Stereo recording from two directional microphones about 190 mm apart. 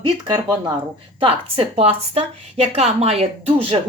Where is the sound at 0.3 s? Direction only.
20° right (ahead or behind).